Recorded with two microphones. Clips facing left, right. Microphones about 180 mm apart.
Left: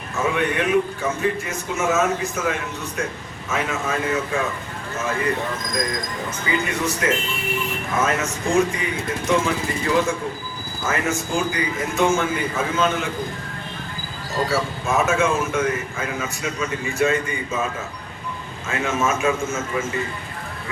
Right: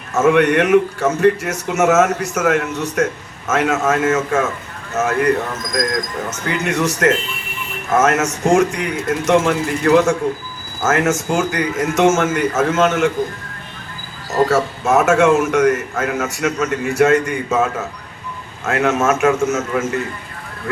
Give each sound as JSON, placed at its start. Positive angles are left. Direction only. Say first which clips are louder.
{"t": 0.1, "sound": "a man's voice", "louder": "right 9 dB", "side_deg": -75}
{"t": 14.4, "sound": "a man's voice", "louder": "right 7 dB", "side_deg": -75}